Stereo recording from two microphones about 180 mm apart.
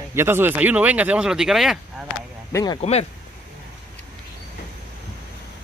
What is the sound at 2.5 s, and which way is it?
Speech, 25° left (ahead or behind).